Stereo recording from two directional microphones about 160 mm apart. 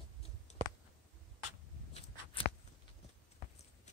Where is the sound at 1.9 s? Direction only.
35° left (ahead or behind).